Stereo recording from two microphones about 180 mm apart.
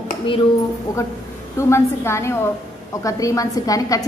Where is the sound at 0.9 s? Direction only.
20° left (ahead or behind).